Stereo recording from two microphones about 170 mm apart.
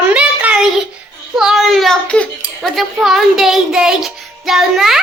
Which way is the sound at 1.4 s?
Centre (ahead or behind).